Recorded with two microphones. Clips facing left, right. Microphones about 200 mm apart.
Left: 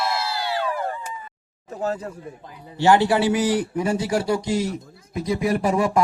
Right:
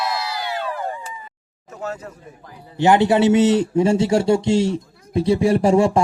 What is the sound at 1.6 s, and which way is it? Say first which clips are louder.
Speech: left 3 dB; 35° left (ahead or behind).